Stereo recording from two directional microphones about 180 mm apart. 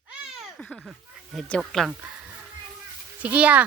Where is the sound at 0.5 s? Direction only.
Centre (ahead or behind).